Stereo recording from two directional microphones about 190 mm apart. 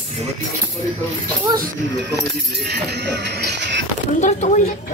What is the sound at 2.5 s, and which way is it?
Music, 60° right (ahead or behind).